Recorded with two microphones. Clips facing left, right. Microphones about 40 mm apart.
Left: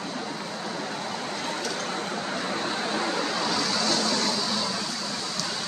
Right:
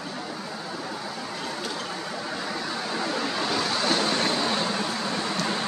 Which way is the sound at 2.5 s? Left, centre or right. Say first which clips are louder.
Left 3 dB; left.